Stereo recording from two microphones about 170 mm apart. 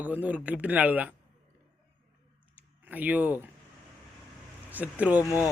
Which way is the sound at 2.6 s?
10° right (ahead or behind).